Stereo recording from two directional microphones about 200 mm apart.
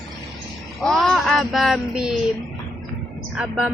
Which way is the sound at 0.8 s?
Centre (ahead or behind).